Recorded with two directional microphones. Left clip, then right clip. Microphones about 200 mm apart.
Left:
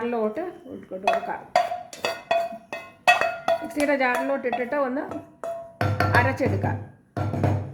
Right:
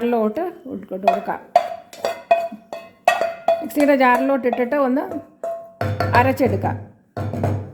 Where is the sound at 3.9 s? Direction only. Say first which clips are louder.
Right 8 dB; 45° right (ahead or behind).